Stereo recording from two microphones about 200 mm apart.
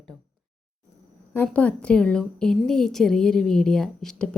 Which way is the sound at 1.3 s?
10° left (ahead or behind).